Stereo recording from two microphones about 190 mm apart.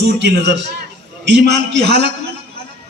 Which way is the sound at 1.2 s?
65° right (ahead or behind).